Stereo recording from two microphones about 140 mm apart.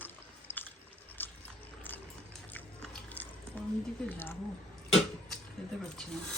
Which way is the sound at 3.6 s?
10° left (ahead or behind).